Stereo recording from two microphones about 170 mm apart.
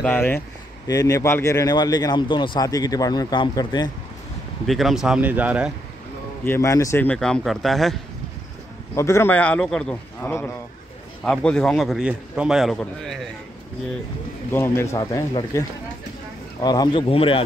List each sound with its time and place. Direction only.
0.0 s a man's voice: 10° left (ahead or behind)
4.6 s a man's voice: centre (ahead or behind)
6.4 s a man's voice: 15° left (ahead or behind)
8.9 s a man's voice: 15° left (ahead or behind)
14.5 s a man's voice: 15° left (ahead or behind)
16.6 s speech: 25° left (ahead or behind)